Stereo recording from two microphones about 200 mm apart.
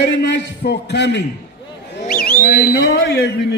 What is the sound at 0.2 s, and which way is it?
A man's voice, 60° left (ahead or behind).